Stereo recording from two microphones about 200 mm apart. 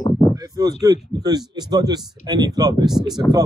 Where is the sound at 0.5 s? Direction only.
20° right (ahead or behind).